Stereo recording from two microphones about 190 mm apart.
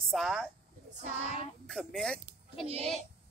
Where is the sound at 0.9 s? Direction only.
40° right (ahead or behind).